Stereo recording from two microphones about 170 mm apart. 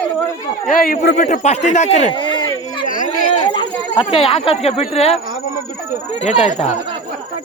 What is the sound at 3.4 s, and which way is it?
Snake, 25° left (ahead or behind).